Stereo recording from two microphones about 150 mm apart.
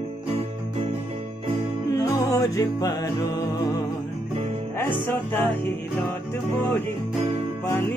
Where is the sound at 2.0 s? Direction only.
20° left (ahead or behind).